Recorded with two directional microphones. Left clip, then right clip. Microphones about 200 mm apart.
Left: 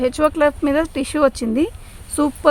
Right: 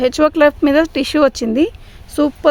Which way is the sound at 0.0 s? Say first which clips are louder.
Right 4 dB; 50° right (ahead or behind).